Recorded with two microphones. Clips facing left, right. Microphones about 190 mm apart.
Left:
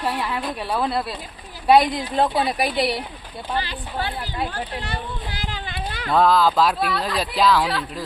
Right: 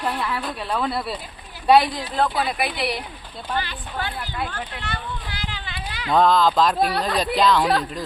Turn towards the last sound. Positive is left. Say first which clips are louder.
# even
turn(degrees=5)  # may be behind; listen again after turning